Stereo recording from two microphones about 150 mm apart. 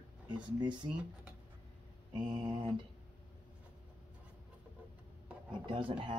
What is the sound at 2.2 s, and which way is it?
Speech, 30° right (ahead or behind).